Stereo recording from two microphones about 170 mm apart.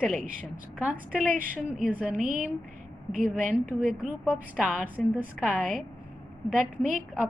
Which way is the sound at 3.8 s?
5° right (ahead or behind).